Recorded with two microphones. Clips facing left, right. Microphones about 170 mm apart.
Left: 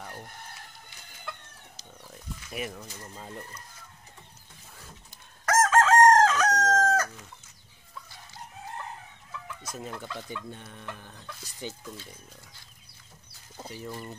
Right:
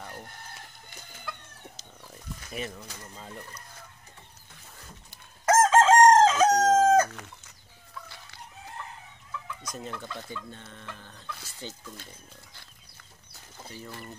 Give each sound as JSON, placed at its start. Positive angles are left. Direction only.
{"t": 2.5, "sound": "speech", "side_deg": 5}
{"t": 5.4, "sound": "chicken", "side_deg": -20}
{"t": 10.3, "sound": "speech", "side_deg": 15}